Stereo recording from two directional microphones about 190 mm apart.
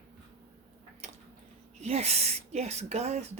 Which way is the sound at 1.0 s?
35° right (ahead or behind).